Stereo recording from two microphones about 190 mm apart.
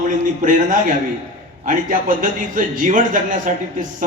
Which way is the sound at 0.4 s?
45° right (ahead or behind).